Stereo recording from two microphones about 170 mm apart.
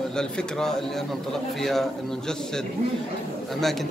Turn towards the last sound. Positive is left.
turn(degrees=0)  # may be behind; listen again after turning